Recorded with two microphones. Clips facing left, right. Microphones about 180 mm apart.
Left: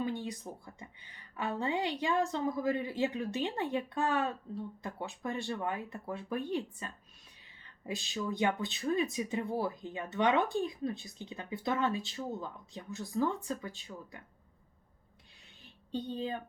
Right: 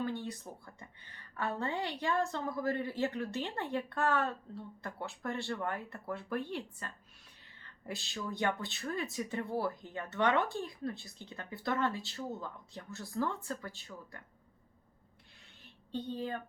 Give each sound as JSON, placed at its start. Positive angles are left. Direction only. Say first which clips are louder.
{"t": 0.0, "sound": "a woman's voice", "louder": "left 2 dB", "side_deg": 15}
{"t": 15.9, "sound": "a woman's voice", "louder": "left 1 dB", "side_deg": 15}